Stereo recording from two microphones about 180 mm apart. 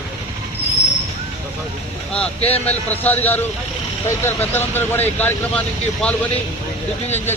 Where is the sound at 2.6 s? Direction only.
10° left (ahead or behind).